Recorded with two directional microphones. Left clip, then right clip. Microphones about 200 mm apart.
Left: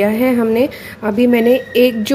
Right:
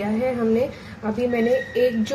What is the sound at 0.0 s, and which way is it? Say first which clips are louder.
Speech: left 9 dB; 45° left (ahead or behind).